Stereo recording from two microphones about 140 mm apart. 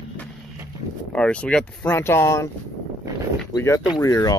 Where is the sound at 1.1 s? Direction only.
10° left (ahead or behind).